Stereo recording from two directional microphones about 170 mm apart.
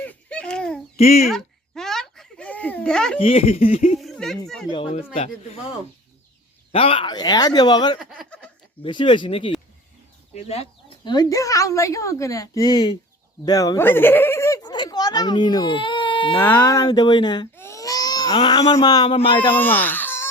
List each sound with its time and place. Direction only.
0.0 s a sound: 10° left (ahead or behind)
0.9 s speech: 40° left (ahead or behind)
1.3 s a sound: centre (ahead or behind)
3.2 s speech: 35° left (ahead or behind)
3.9 s a sound: centre (ahead or behind)
4.4 s speech: centre (ahead or behind)
5.1 s speech: 40° left (ahead or behind); by 7.9 s 25° left (ahead or behind)
7.9 s speech: 5° left (ahead or behind)
8.8 s speech: 30° left (ahead or behind)
16.4 s speech: 10° left (ahead or behind)
17.6 s babbling: 20° left (ahead or behind)
18.3 s speech: 25° left (ahead or behind)
19.1 s speech: 35° left (ahead or behind)
19.5 s speech: 10° left (ahead or behind)